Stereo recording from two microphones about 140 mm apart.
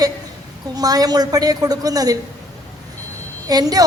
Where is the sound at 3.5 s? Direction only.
25° right (ahead or behind).